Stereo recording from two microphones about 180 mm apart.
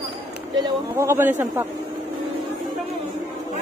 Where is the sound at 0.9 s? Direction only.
15° right (ahead or behind).